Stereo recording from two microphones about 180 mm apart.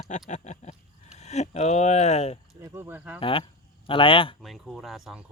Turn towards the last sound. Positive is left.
turn(degrees=0)  # may be behind; listen again after turning